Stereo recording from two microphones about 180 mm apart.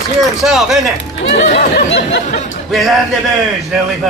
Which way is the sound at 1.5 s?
80° left.